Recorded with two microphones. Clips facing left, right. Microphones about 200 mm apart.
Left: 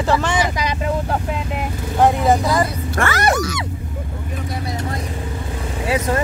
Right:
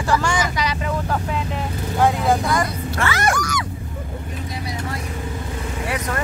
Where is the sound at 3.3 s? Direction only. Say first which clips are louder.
Left 4 dB; 25° left (ahead or behind).